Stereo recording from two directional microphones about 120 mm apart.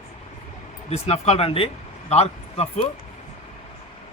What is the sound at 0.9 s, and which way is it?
Speech, 60° left (ahead or behind).